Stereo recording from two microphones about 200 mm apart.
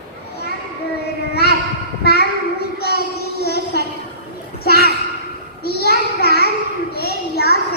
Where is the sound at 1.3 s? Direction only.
55° left (ahead or behind).